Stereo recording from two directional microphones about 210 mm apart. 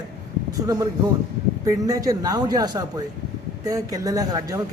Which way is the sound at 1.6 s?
15° right (ahead or behind).